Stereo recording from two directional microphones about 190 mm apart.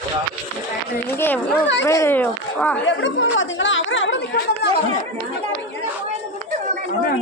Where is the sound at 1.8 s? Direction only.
15° left (ahead or behind).